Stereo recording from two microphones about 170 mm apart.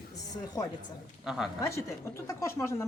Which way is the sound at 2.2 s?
15° left (ahead or behind).